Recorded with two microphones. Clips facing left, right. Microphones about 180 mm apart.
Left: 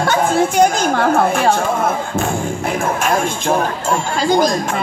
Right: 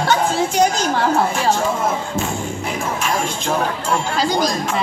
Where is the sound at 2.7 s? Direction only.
50° left (ahead or behind).